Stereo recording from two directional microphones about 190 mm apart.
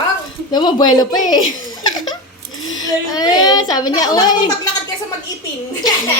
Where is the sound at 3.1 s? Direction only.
20° left (ahead or behind).